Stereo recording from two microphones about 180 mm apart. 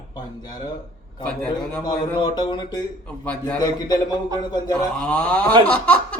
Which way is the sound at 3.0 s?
5° left (ahead or behind).